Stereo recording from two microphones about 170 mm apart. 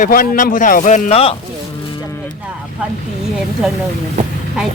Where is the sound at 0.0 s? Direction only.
55° left (ahead or behind); by 1.4 s 35° left (ahead or behind).